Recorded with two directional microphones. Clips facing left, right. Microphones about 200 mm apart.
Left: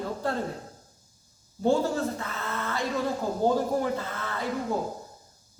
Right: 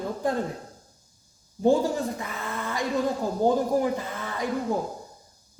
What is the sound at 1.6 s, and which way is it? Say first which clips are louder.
A man's voice: right 2 dB; 15° right (ahead or behind).